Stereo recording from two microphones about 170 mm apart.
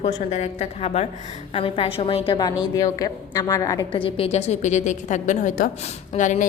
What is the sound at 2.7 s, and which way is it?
A woman's voice, 20° left (ahead or behind).